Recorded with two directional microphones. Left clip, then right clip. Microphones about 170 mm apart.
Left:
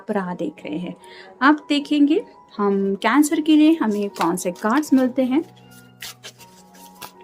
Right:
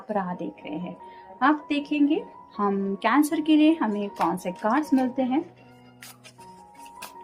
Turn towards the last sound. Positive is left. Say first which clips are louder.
# left 5 dB
turn(degrees=45)  # may be behind; listen again after turning